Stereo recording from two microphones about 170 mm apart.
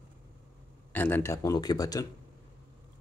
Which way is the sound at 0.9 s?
10° left (ahead or behind).